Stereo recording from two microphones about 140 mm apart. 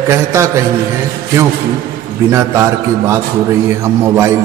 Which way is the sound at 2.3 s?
20° right (ahead or behind).